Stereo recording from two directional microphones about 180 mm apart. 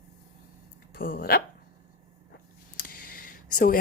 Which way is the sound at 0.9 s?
55° left (ahead or behind).